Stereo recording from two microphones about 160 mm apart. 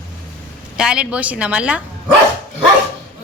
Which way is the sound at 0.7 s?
5° right (ahead or behind).